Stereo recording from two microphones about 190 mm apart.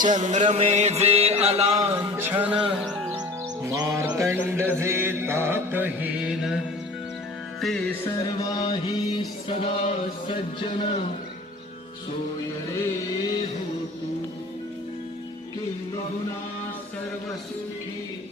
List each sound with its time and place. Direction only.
0.2 s music: 40° right (ahead or behind)
1.8 s music: 15° right (ahead or behind)
3.2 s music: 20° right (ahead or behind); by 6.6 s 5° right (ahead or behind)
7.6 s music: 5° left (ahead or behind)
8.4 s music: 20° left (ahead or behind)